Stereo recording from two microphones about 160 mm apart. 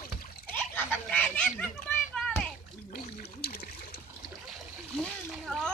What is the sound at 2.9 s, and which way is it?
Trickle, 75° left (ahead or behind).